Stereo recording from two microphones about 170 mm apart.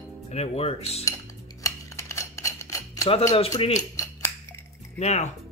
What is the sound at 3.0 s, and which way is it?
Speech, 35° left (ahead or behind).